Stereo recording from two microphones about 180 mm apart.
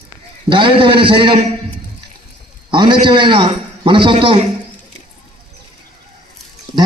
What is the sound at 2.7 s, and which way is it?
A man's voice, 25° right (ahead or behind).